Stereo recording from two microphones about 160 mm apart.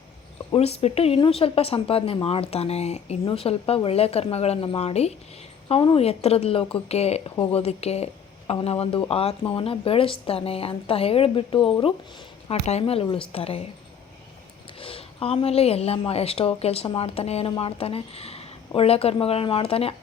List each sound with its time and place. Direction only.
0.5 s speech: 40° left (ahead or behind)
14.8 s speech: 35° left (ahead or behind)